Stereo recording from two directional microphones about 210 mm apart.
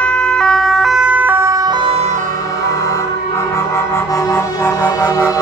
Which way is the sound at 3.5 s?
15° left (ahead or behind).